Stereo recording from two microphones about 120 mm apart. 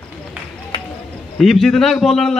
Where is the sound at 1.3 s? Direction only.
Centre (ahead or behind).